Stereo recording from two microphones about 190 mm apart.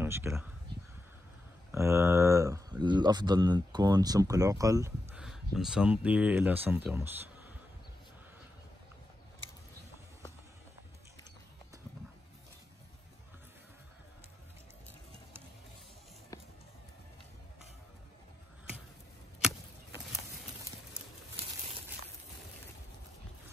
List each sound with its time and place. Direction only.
0.0 s speech: 15° right (ahead or behind)
1.7 s speech: 15° right (ahead or behind)
5.1 s speech: centre (ahead or behind)